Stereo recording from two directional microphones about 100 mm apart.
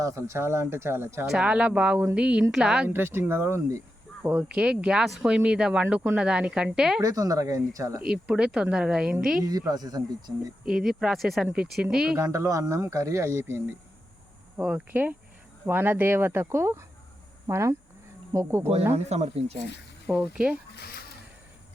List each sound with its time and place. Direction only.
0.0 s speech: 30° right (ahead or behind)
1.3 s speech: 10° right (ahead or behind)
2.9 s speech: 20° right (ahead or behind); by 7.0 s 5° right (ahead or behind)
7.0 s speech: 35° right (ahead or behind)
8.0 s speech: 10° right (ahead or behind)
9.4 s speech: 40° right (ahead or behind)
10.7 s speech: 5° right (ahead or behind)
12.1 s speech: 25° right (ahead or behind)
14.5 s speech: 10° right (ahead or behind); by 18.6 s 30° right (ahead or behind)
18.9 s speech: 90° right
20.1 s speech: 10° right (ahead or behind)